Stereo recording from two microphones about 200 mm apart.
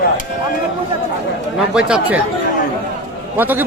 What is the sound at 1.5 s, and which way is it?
Speech, 5° right (ahead or behind).